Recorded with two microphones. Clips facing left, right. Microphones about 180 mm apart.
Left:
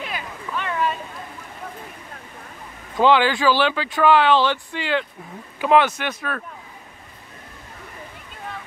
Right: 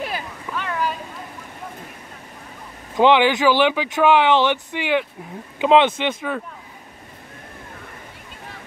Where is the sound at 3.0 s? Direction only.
20° right (ahead or behind).